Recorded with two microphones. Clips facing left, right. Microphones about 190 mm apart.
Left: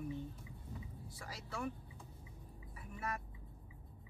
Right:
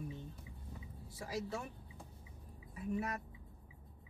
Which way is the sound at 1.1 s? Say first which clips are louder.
Right 10 dB; 20° right (ahead or behind).